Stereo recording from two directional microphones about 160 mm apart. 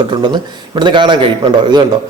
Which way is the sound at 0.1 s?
30° right (ahead or behind).